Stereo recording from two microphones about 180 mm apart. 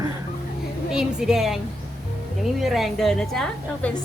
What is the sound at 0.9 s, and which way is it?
Speech, 5° right (ahead or behind).